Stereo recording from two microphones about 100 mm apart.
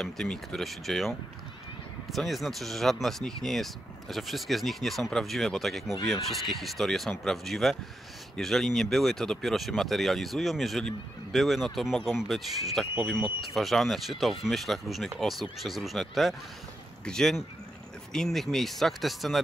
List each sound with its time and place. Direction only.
0.0 s speech: 5° left (ahead or behind)